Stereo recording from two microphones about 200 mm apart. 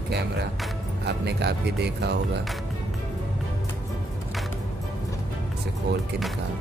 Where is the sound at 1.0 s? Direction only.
55° right (ahead or behind).